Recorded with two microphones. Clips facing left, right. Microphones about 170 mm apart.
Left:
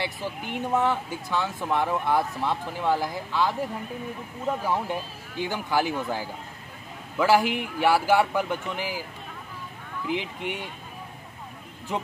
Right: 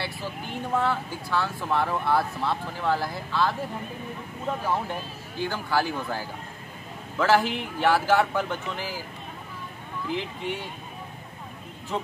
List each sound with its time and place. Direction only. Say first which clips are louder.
0.0 s speech: left 2 dB; 15° left (ahead or behind)
5.4 s speech: left 1 dB; 15° left (ahead or behind)
10.0 s speech: left 1 dB; 15° left (ahead or behind)
11.9 s speech: even; 15° left (ahead or behind)